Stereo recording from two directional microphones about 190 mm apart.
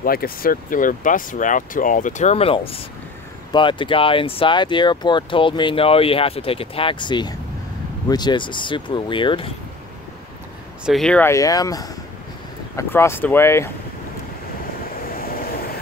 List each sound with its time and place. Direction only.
0.0 s speech: 50° left (ahead or behind); by 9.5 s 25° left (ahead or behind)
10.9 s speech: 5° left (ahead or behind)